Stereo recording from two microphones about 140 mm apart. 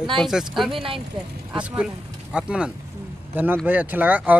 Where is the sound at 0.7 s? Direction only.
40° right (ahead or behind).